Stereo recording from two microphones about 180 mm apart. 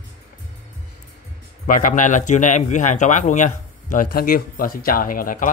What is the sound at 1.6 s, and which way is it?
A man's voice, 45° left (ahead or behind).